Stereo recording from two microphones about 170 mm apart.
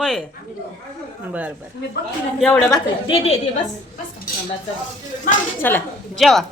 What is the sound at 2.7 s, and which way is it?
Speech, 25° left (ahead or behind).